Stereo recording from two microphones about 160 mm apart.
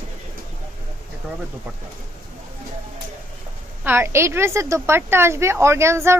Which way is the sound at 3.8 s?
15° right (ahead or behind).